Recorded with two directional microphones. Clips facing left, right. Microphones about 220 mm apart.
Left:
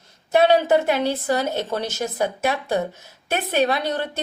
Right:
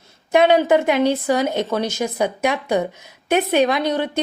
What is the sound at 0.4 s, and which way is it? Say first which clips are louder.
A woman's voice: right 2 dB; 15° right (ahead or behind).